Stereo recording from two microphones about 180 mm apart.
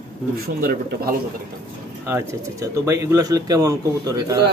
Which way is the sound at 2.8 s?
15° right (ahead or behind).